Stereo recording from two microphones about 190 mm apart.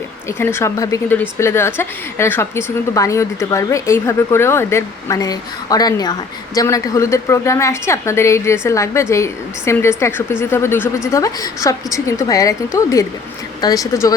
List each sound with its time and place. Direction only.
0.3 s a woman's voice: 15° left (ahead or behind)